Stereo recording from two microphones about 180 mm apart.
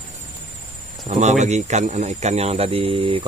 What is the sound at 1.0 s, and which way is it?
Speech, 40° right (ahead or behind).